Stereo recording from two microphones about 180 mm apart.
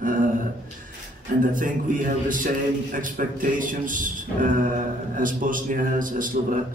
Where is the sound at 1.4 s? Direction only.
50° right (ahead or behind).